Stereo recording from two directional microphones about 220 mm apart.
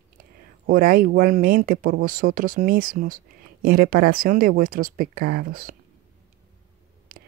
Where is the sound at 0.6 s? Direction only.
40° right (ahead or behind).